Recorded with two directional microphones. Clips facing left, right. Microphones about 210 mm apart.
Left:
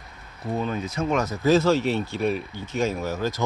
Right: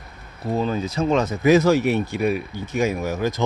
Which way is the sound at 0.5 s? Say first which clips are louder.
Right 4 dB; 30° right (ahead or behind).